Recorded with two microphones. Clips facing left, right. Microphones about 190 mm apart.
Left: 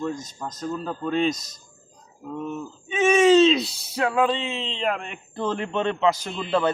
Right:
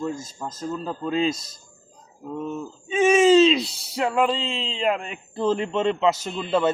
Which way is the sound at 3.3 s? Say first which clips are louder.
Even; centre (ahead or behind).